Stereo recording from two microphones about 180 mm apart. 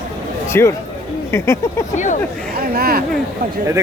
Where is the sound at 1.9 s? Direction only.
45° left (ahead or behind).